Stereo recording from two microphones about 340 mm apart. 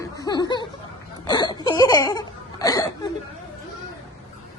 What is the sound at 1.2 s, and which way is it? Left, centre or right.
Laughter, centre.